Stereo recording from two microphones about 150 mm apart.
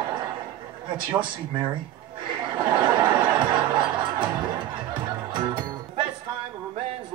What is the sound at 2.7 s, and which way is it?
Music, 30° right (ahead or behind).